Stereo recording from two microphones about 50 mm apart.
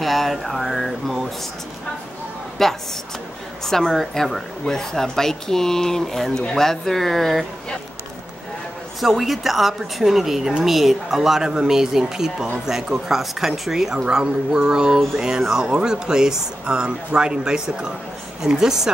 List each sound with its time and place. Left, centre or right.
0.0 s speech: centre
2.6 s a woman's voice: centre
9.0 s speech: centre
13.9 s speech: centre